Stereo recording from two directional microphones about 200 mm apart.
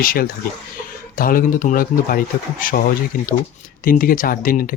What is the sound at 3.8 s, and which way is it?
Speech, 45° left (ahead or behind).